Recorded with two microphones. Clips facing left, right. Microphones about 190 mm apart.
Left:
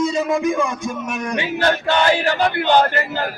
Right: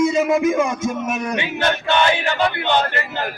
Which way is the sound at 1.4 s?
20° right (ahead or behind).